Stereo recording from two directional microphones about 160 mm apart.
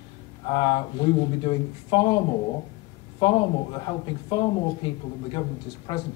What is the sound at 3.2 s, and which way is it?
Speech, 30° left (ahead or behind).